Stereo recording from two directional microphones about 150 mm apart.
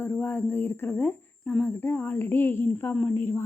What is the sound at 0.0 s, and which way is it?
Speech, 15° left (ahead or behind).